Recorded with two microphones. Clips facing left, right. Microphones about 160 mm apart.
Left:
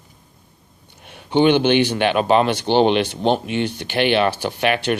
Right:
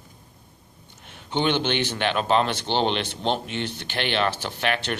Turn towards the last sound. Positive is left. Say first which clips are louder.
# left 7 dB
turn(degrees=10)  # may be behind; listen again after turning